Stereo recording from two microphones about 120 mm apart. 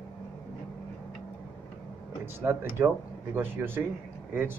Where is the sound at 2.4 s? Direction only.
20° right (ahead or behind).